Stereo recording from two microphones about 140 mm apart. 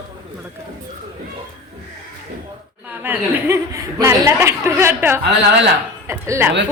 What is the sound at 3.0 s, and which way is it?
A woman's voice, 15° right (ahead or behind).